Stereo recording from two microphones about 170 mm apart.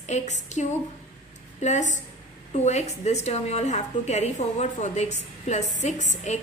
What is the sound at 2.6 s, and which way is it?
A woman's voice, 40° left (ahead or behind).